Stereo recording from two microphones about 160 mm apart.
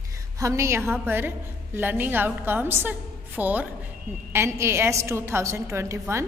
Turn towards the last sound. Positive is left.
turn(degrees=-15)  # may be behind; listen again after turning